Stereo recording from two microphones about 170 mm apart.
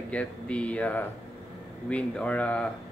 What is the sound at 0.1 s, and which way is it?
Speech, 5° left (ahead or behind).